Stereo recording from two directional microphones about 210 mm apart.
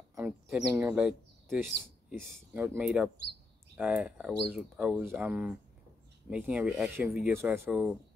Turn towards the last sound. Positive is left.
turn(degrees=-10)  # may be behind; listen again after turning